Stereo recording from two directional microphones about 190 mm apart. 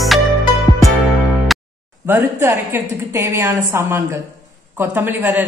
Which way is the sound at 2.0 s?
15° right (ahead or behind).